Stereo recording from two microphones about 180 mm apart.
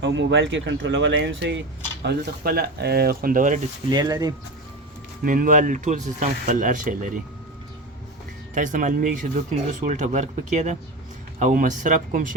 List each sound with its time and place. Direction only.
0.0 s speech: 90° right
2.0 s speech: 60° right (ahead or behind)
3.8 s speech: 25° right (ahead or behind)
5.2 s speech: 50° right (ahead or behind)
8.5 s speech: 45° right (ahead or behind)